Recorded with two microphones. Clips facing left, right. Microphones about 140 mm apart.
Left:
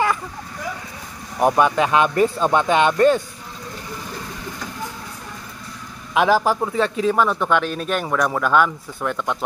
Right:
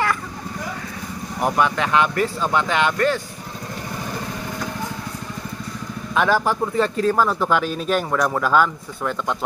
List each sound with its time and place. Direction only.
1.4 s speech: 20° left (ahead or behind)
6.1 s speech: 10° left (ahead or behind)
6.8 s speech: centre (ahead or behind)